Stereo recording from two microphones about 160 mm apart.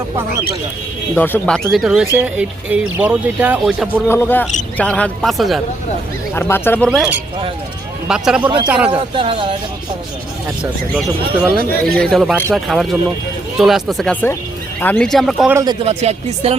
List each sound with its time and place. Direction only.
1.1 s speech: 10° left (ahead or behind); by 4.0 s 10° right (ahead or behind)
4.1 s speech: 15° left (ahead or behind)
6.3 s speech: 15° left (ahead or behind)
8.0 s a man's voice: 5° right (ahead or behind)
8.4 s a man's voice: 30° right (ahead or behind)
8.6 s speech: 10° right (ahead or behind)
8.9 s speech: 35° right (ahead or behind)
10.6 s speech: 10° right (ahead or behind)
15.6 s a man's voice: 25° right (ahead or behind)
15.9 s speech: 40° right (ahead or behind)